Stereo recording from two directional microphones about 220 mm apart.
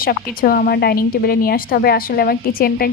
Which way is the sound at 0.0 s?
40° left (ahead or behind).